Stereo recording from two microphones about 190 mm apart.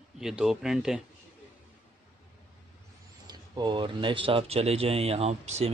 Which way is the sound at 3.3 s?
25° right (ahead or behind).